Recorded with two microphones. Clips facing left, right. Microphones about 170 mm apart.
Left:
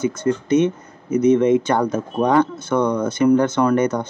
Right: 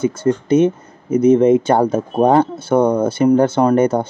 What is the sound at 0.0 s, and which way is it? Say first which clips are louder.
Speech: right 3 dB; 30° right (ahead or behind).